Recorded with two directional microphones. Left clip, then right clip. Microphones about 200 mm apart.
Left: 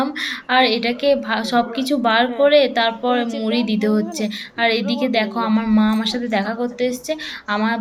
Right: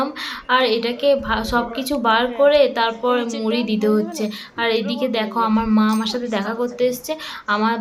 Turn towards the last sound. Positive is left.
turn(degrees=5)  # may be behind; listen again after turning